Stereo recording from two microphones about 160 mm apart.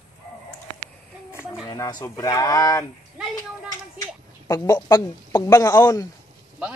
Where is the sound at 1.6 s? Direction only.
25° left (ahead or behind).